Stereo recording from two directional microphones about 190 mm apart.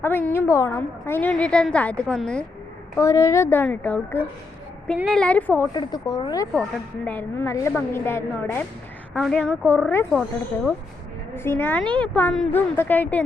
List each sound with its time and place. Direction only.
0.0 s a woman's voice: 10° left (ahead or behind)
2.9 s a woman's voice: 15° left (ahead or behind)
5.7 s a woman's voice: 20° left (ahead or behind)
11.3 s a woman's voice: 10° left (ahead or behind)